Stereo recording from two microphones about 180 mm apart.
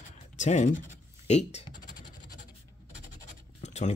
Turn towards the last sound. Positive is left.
turn(degrees=40)  # may be behind; listen again after turning